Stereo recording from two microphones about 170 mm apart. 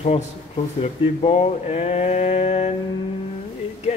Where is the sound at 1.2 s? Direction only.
35° left (ahead or behind).